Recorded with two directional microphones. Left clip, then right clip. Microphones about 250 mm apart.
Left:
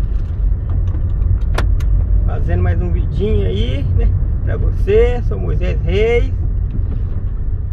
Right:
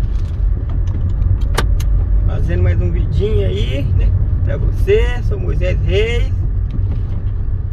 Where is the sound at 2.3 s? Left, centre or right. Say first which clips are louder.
Even; centre.